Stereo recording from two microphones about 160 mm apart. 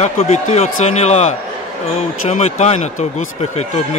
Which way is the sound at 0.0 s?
45° left (ahead or behind).